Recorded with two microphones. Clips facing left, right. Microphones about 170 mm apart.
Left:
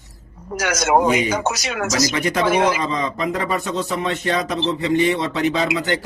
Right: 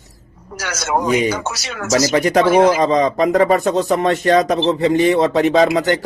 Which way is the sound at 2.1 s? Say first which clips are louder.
Right 6 dB; 40° right (ahead or behind).